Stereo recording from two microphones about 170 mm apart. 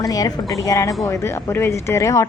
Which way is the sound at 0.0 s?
20° left (ahead or behind).